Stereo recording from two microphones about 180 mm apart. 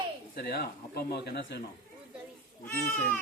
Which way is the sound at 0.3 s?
60° left (ahead or behind).